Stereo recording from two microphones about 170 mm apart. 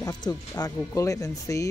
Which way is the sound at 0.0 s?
25° left (ahead or behind).